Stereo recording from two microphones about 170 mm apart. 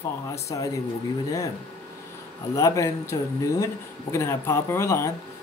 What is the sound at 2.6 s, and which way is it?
Speech, 20° left (ahead or behind).